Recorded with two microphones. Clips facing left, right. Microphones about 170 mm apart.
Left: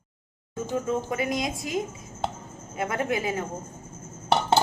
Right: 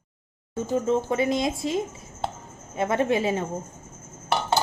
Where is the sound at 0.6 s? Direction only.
30° right (ahead or behind).